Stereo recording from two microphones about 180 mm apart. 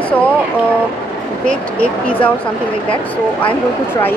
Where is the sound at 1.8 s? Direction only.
10° left (ahead or behind).